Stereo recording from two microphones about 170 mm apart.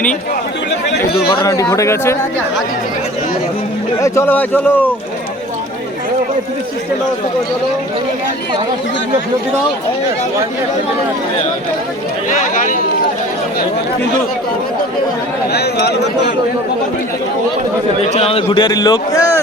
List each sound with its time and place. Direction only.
1.3 s a man's voice: 20° left (ahead or behind)
4.0 s speech: 15° left (ahead or behind)
12.3 s speech: 50° left (ahead or behind)
15.5 s speech: 70° left (ahead or behind)
18.1 s a man's voice: 35° left (ahead or behind); by 19.3 s 20° left (ahead or behind)